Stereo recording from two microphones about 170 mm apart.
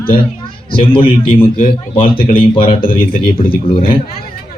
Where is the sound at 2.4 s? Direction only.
30° left (ahead or behind).